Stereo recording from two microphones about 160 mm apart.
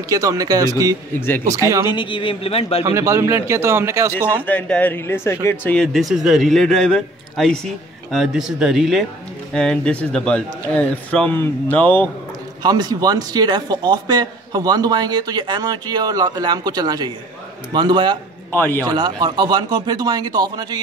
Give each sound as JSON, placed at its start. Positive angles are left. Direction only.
{"t": 0.1, "sound": "a man's voice", "side_deg": -20}
{"t": 1.9, "sound": "a man's voice", "side_deg": 30}
{"t": 2.8, "sound": "a man's voice", "side_deg": -20}
{"t": 4.5, "sound": "a man's voice", "side_deg": 10}
{"t": 12.6, "sound": "a man's voice", "side_deg": -25}
{"t": 18.5, "sound": "a man's voice", "side_deg": 15}
{"t": 18.9, "sound": "a man's voice", "side_deg": -25}